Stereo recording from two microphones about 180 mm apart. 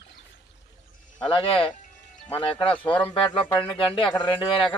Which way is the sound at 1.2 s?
30° left (ahead or behind).